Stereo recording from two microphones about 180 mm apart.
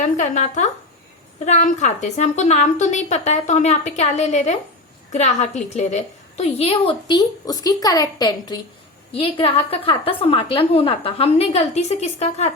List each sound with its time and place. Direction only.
0.0 s a woman's voice: 40° left (ahead or behind)